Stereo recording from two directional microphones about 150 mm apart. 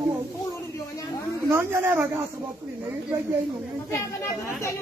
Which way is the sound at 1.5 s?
15° right (ahead or behind).